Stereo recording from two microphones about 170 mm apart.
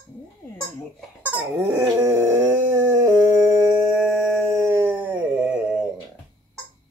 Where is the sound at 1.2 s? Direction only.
10° right (ahead or behind).